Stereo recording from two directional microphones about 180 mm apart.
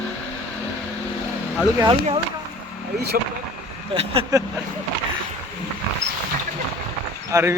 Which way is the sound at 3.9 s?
30° right (ahead or behind).